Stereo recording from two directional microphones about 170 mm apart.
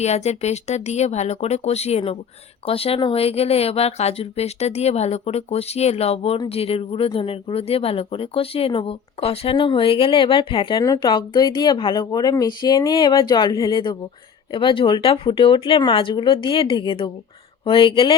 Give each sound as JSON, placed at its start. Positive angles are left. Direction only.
{"t": 0.0, "sound": "speech", "side_deg": 40}